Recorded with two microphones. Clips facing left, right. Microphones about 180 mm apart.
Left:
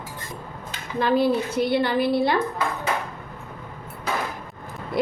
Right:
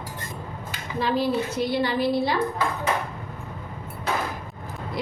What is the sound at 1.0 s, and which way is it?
A woman's voice, 55° left (ahead or behind).